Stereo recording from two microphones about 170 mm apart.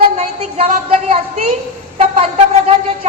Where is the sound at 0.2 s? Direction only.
40° right (ahead or behind).